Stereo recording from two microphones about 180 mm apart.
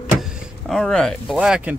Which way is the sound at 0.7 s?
5° left (ahead or behind).